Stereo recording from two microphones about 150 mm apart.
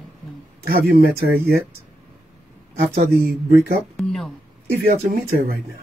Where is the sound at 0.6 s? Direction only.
85° right.